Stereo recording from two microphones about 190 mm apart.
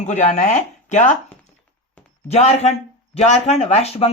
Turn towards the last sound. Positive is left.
turn(degrees=35)  # may be behind; listen again after turning